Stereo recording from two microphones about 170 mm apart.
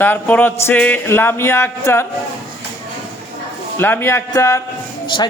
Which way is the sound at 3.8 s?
10° left (ahead or behind).